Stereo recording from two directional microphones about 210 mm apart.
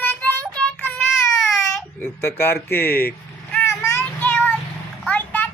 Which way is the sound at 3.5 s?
10° left (ahead or behind).